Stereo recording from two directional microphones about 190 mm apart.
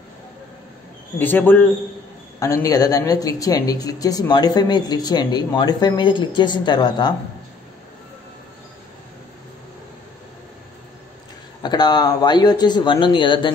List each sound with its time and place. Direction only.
1.1 s a man's voice: 10° left (ahead or behind)
11.6 s speech: 20° left (ahead or behind)